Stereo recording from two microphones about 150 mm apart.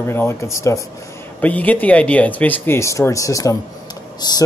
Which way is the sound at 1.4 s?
10° left (ahead or behind).